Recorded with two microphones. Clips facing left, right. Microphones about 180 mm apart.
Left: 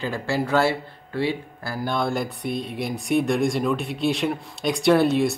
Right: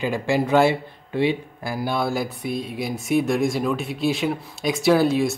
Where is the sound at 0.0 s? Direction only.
15° right (ahead or behind).